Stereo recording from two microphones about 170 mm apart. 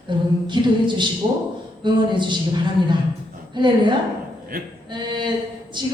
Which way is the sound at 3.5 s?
25° right (ahead or behind).